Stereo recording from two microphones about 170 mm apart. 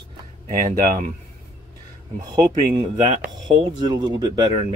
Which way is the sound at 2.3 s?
25° right (ahead or behind).